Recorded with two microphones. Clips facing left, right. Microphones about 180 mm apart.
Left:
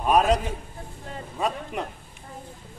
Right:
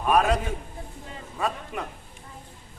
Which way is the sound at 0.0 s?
20° left (ahead or behind).